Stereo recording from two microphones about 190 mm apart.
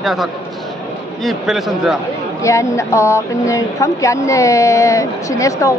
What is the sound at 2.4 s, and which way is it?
Speech, 15° left (ahead or behind).